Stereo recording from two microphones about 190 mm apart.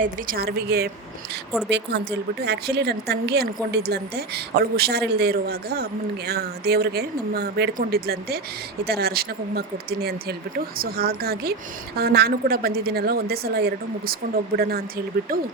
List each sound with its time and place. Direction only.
0.0 s a woman's voice: 50° right (ahead or behind)